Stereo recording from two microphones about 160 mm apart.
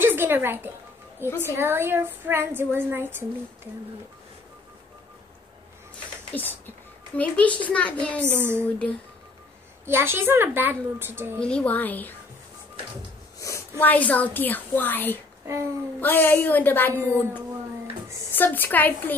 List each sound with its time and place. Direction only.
0.0 s music: 15° right (ahead or behind)
1.2 s a woman's voice: 15° right (ahead or behind)
6.3 s a child's voice: 10° left (ahead or behind)
8.2 s a woman's voice: 15° right (ahead or behind)
9.8 s a woman's voice: 15° right (ahead or behind)
11.3 s a child's voice: 5° left (ahead or behind)
13.4 s a woman's voice: 20° left (ahead or behind)
17.0 s a woman's voice: 15° right (ahead or behind)
18.3 s a child's voice: 10° left (ahead or behind)